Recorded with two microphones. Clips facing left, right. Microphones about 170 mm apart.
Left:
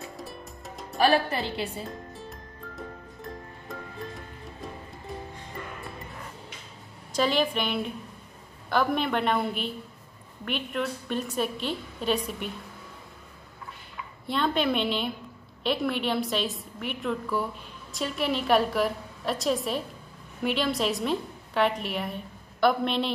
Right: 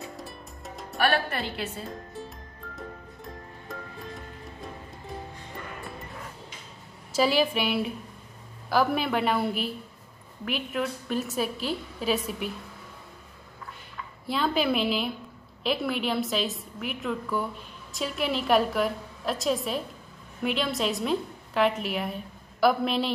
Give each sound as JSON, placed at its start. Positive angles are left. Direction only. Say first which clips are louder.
{"t": 0.9, "sound": "a woman's voice", "louder": "left 3 dB", "side_deg": 20}
{"t": 2.2, "sound": "music", "louder": "left 1 dB", "side_deg": 0}
{"t": 7.1, "sound": "a woman's voice", "louder": "right 2 dB", "side_deg": -5}
{"t": 14.2, "sound": "a woman's voice", "louder": "even", "side_deg": 0}